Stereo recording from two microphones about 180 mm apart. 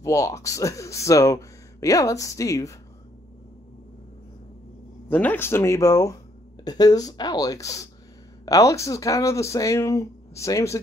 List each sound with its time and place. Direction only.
0.0 s speech: 15° left (ahead or behind)
5.1 s speech: 10° left (ahead or behind)